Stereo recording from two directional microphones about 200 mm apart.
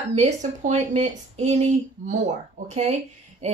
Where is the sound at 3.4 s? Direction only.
35° right (ahead or behind).